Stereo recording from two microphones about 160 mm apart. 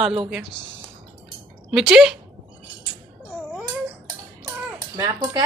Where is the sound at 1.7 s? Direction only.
5° right (ahead or behind).